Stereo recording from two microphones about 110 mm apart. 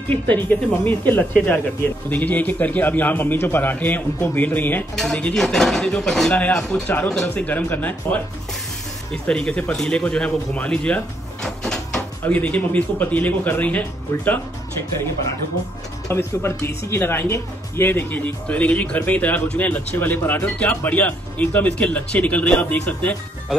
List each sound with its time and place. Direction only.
0.5 s speech: 15° left (ahead or behind)
4.9 s speech: 5° left (ahead or behind)
16.1 s speech: 20° left (ahead or behind)